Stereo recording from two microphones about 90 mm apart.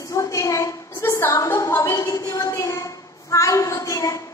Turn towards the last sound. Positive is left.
turn(degrees=35)  # may be behind; listen again after turning